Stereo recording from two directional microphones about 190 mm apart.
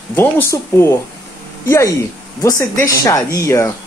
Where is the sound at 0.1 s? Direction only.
10° left (ahead or behind).